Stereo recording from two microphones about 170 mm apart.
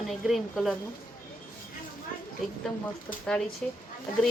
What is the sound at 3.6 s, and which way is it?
Speech, 10° left (ahead or behind).